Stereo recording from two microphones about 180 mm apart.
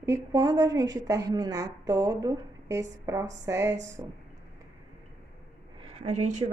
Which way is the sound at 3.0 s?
15° right (ahead or behind).